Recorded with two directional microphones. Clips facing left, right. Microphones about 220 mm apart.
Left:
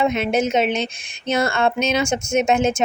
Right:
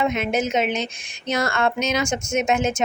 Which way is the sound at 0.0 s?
30° left (ahead or behind).